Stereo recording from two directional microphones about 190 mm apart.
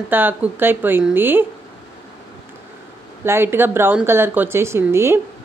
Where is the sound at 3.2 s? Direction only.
10° right (ahead or behind).